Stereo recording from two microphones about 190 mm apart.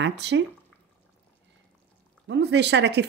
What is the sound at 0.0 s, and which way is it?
Speech, 65° right (ahead or behind).